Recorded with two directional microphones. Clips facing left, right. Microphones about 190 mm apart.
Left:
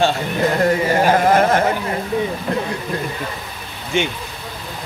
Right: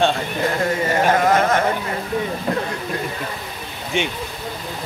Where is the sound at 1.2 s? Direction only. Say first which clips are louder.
Left 2 dB; 30° left (ahead or behind).